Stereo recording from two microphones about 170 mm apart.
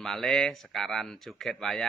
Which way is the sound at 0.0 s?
Centre (ahead or behind).